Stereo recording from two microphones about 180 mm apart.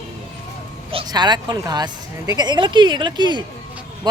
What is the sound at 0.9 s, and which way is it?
Speech, 25° right (ahead or behind).